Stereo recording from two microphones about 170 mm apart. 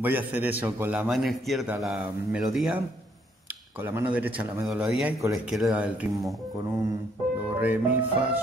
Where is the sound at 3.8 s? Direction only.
10° right (ahead or behind).